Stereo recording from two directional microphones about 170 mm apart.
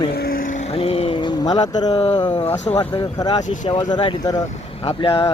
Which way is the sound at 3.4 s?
45° left (ahead or behind).